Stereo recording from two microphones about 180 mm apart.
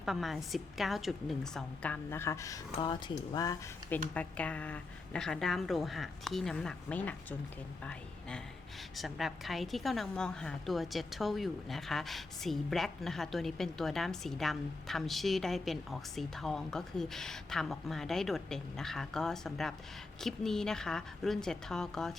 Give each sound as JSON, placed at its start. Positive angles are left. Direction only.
{"t": 0.0, "sound": "a woman's voice", "side_deg": 0}
{"t": 4.1, "sound": "a woman's voice", "side_deg": 5}
{"t": 9.0, "sound": "a woman's voice", "side_deg": 0}